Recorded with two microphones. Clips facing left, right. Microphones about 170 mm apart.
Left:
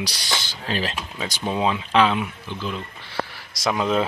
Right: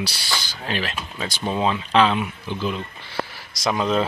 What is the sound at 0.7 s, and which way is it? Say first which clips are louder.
Speech: left 1 dB; 35° left (ahead or behind).